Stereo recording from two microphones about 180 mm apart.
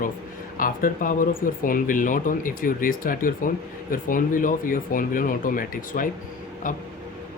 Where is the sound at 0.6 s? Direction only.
50° left (ahead or behind).